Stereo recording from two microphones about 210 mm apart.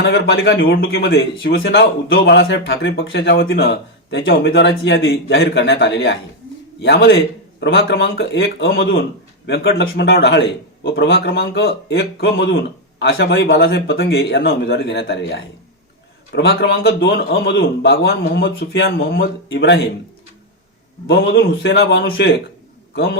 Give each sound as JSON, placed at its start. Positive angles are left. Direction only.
{"t": 0.0, "sound": "a man's voice", "side_deg": 55}
{"t": 2.0, "sound": "a man's voice", "side_deg": 60}
{"t": 14.3, "sound": "a man's voice", "side_deg": 50}
{"t": 19.5, "sound": "a man's voice", "side_deg": 60}
{"t": 21.1, "sound": "a man's voice", "side_deg": 55}